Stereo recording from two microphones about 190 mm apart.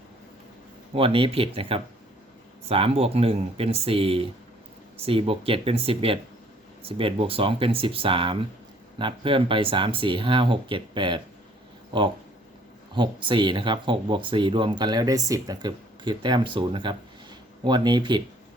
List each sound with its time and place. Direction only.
0.9 s speech: 30° right (ahead or behind)